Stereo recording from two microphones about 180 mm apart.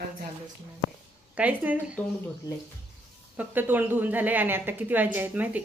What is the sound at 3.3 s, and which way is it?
A woman's voice, 10° right (ahead or behind).